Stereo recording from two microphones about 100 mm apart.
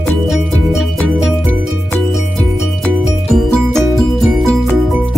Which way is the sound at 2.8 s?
5° left (ahead or behind).